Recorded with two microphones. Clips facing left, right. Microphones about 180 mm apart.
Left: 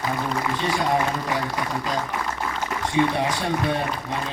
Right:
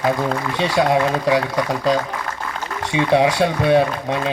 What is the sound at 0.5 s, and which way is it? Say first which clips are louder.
Speech: right 7 dB; 75° right (ahead or behind).